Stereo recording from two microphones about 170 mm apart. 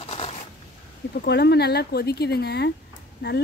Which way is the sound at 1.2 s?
75° left (ahead or behind).